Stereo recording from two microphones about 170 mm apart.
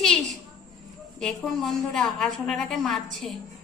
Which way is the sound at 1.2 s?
Centre (ahead or behind).